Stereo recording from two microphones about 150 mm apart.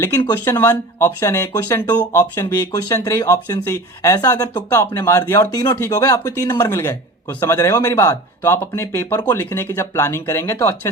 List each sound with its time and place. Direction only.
0.0 s speech: 20° left (ahead or behind)